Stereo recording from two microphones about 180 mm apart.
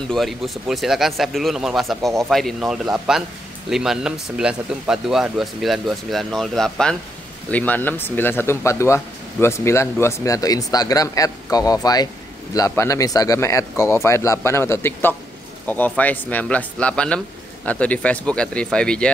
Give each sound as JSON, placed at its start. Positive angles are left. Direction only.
{"t": 0.1, "sound": "a man's voice", "side_deg": 0}